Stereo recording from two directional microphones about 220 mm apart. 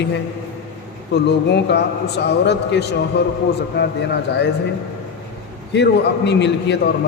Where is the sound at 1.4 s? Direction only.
50° left (ahead or behind).